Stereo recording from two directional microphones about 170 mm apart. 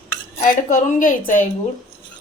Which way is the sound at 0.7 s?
50° left (ahead or behind).